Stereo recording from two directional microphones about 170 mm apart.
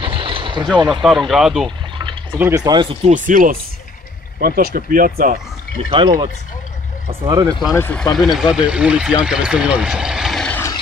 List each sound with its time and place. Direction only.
0.0 s a sound: 30° right (ahead or behind)
1.0 s speech: centre (ahead or behind)
2.3 s speech: 15° right (ahead or behind)
3.1 s speech: 50° right (ahead or behind)
5.9 s speech: 30° right (ahead or behind)
7.7 s speech: 10° left (ahead or behind)